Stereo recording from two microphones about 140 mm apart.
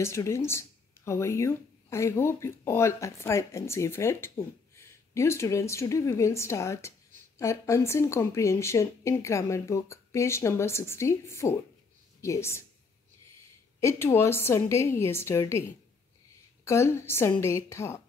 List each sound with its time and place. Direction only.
0.0 s speech: 20° left (ahead or behind)
13.7 s speech: 20° left (ahead or behind)
16.6 s speech: 20° left (ahead or behind)